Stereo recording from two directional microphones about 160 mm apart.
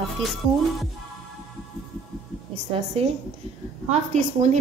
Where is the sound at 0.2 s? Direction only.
Centre (ahead or behind).